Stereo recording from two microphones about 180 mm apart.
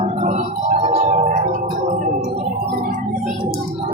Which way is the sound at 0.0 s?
40° right (ahead or behind).